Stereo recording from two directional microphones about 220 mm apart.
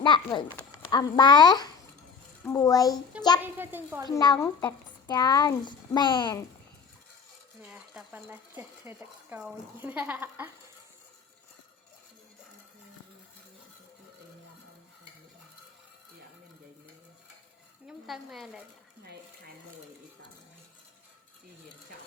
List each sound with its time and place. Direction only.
0.0 s a woman's voice: 20° left (ahead or behind)
3.4 s speech: 10° right (ahead or behind)
4.1 s speech: 15° left (ahead or behind)
7.7 s speech: 10° right (ahead or behind)
17.8 s speech: centre (ahead or behind)